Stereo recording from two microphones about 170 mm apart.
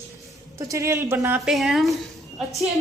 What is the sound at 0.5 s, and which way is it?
Speech, 20° right (ahead or behind).